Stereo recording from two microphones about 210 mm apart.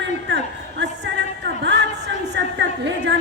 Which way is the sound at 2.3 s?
55° right (ahead or behind).